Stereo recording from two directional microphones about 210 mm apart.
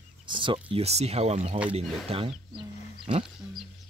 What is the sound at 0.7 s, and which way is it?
Speech, 30° right (ahead or behind).